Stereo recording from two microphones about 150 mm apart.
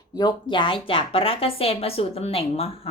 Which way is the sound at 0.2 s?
30° left (ahead or behind).